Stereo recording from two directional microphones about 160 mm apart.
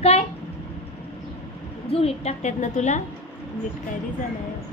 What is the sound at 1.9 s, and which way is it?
A woman's voice, 40° left (ahead or behind).